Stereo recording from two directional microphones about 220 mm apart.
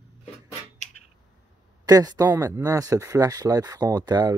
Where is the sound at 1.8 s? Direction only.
15° right (ahead or behind).